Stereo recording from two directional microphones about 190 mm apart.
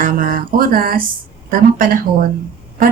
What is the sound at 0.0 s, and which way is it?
Speech, 45° right (ahead or behind).